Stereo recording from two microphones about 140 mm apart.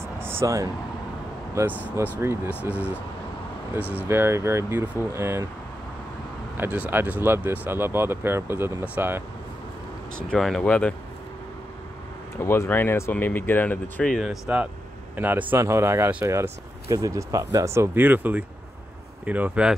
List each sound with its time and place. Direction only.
0.0 s air conditioning: 15° right (ahead or behind)
1.7 s speech: 10° left (ahead or behind)
2.1 s speech: 15° right (ahead or behind)
4.1 s speech: 20° right (ahead or behind)
6.5 s speech: 15° right (ahead or behind)
10.1 s speech: centre (ahead or behind)
12.4 s speech: 15° left (ahead or behind)
14.2 s speech: 5° right (ahead or behind)